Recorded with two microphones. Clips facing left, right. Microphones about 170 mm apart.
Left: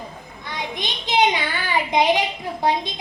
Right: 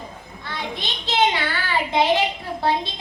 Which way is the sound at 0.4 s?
15° left (ahead or behind).